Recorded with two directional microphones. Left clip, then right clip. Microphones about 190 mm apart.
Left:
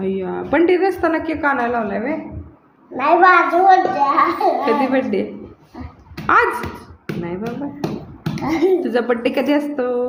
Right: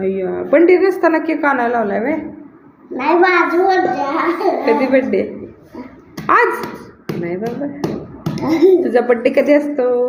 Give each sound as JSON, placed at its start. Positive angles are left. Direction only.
{"t": 0.0, "sound": "a woman's voice", "side_deg": 25}
{"t": 3.0, "sound": "a child's voice", "side_deg": 20}
{"t": 6.2, "sound": "speech", "side_deg": 15}
{"t": 7.4, "sound": "speech", "side_deg": -5}
{"t": 8.4, "sound": "a child's voice", "side_deg": 25}